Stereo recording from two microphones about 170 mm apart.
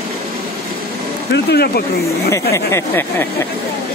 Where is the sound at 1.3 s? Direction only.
70° left (ahead or behind).